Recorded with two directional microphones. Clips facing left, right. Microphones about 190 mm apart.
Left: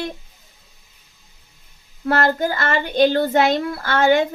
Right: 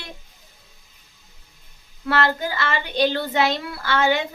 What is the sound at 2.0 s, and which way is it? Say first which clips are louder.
Child singing: left 4 dB; 45° left (ahead or behind).